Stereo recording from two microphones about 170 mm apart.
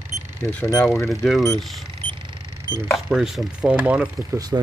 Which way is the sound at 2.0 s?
30° right (ahead or behind).